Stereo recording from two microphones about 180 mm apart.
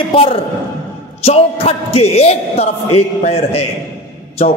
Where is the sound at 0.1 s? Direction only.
30° left (ahead or behind).